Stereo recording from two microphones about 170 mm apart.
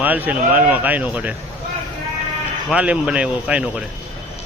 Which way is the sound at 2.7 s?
5° right (ahead or behind).